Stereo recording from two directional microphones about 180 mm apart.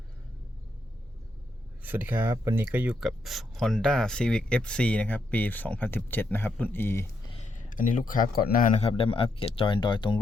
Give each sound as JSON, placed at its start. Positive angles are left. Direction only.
{"t": 1.8, "sound": "speech", "side_deg": -10}
{"t": 7.8, "sound": "speech", "side_deg": 50}